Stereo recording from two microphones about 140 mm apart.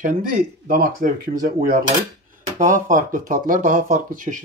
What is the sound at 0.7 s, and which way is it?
Speech, 80° right.